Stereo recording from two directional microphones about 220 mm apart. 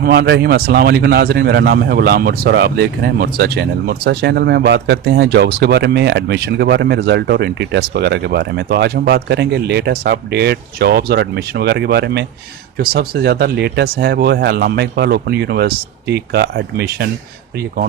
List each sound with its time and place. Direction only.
0.0 s a man's voice: 45° right (ahead or behind)